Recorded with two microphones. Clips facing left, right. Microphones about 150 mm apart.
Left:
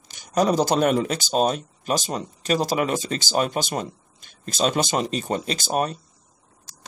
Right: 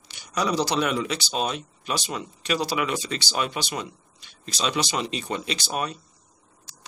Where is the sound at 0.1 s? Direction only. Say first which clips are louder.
Left 5 dB; 45° left (ahead or behind).